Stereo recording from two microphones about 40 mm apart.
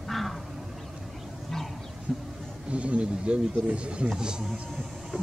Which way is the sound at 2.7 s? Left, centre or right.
Right.